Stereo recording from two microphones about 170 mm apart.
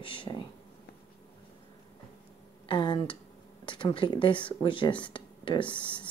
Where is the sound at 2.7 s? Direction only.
30° left (ahead or behind).